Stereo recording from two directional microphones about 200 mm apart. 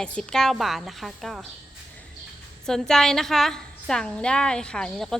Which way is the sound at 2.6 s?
Centre (ahead or behind).